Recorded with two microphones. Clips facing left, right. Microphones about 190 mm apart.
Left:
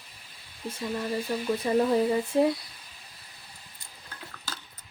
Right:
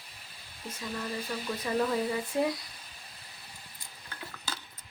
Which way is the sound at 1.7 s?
25° left (ahead or behind).